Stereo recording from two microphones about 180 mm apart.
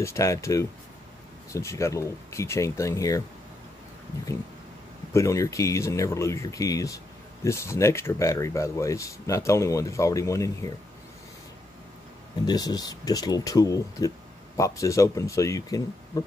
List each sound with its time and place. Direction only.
0.0 s speech: 15° left (ahead or behind)
5.1 s speech: 15° left (ahead or behind)
12.4 s speech: 20° left (ahead or behind)